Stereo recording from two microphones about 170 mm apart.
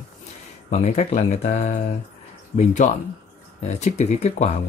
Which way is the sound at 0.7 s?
40° left (ahead or behind).